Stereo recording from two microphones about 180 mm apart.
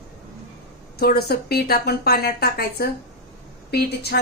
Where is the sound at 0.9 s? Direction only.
60° left (ahead or behind).